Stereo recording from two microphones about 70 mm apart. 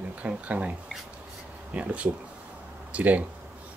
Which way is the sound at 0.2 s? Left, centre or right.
Centre.